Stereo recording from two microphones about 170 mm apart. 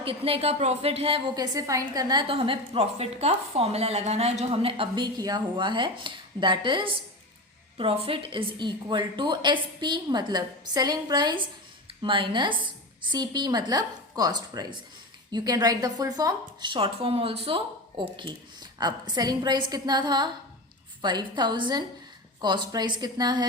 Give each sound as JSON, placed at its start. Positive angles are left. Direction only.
{"t": 0.0, "sound": "a woman's voice", "side_deg": -35}
{"t": 1.5, "sound": "a woman's voice", "side_deg": -20}